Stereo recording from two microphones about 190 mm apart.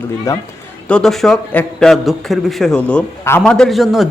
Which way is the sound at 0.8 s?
5° left (ahead or behind).